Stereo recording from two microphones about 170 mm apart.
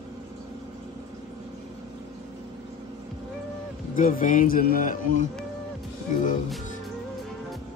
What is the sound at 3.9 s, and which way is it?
Speech, 55° left (ahead or behind).